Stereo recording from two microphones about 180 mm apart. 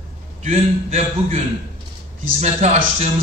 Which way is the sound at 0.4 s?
40° right (ahead or behind).